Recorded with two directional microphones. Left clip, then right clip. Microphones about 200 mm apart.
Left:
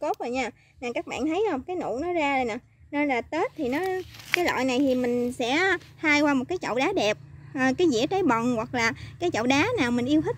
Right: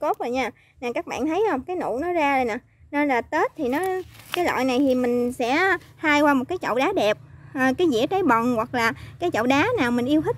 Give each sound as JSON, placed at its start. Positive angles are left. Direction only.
{"t": 0.0, "sound": "speech", "side_deg": 0}